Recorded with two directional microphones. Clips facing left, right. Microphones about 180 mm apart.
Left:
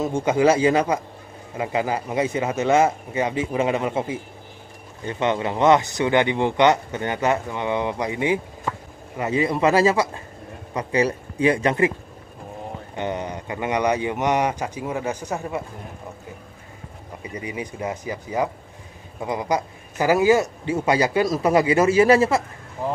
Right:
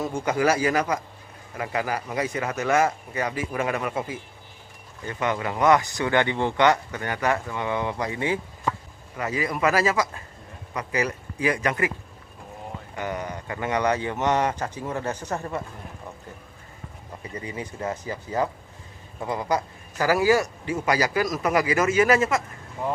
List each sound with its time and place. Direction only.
0.0 s a man's voice: 25° left (ahead or behind)
12.9 s a man's voice: 25° left (ahead or behind)
17.2 s a man's voice: 15° left (ahead or behind); by 22.4 s 30° left (ahead or behind)